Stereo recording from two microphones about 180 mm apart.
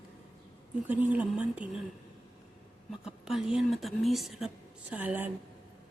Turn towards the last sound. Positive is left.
turn(degrees=-10)  # may be behind; listen again after turning